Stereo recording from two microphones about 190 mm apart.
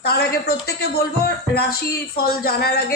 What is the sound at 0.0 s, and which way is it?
Speech, 55° left (ahead or behind).